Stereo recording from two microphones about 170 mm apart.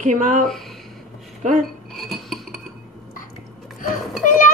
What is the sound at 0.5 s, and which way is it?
Speech, centre (ahead or behind).